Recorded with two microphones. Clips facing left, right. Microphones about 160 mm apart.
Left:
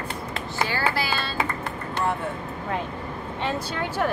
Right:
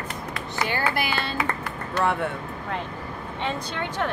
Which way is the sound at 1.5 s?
65° right (ahead or behind).